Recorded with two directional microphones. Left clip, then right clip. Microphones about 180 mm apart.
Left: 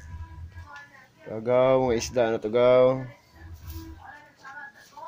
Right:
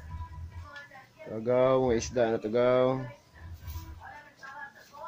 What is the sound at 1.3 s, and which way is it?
Speech, 10° left (ahead or behind).